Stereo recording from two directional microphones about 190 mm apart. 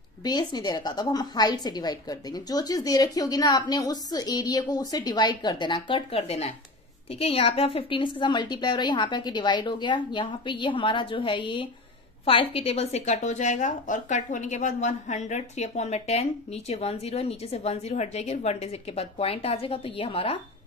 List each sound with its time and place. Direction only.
0.2 s a woman's voice: 20° left (ahead or behind)